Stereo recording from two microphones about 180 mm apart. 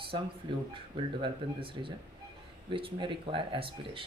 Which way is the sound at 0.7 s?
30° right (ahead or behind).